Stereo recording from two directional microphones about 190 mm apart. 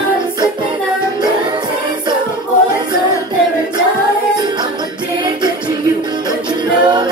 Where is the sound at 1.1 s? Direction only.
25° right (ahead or behind).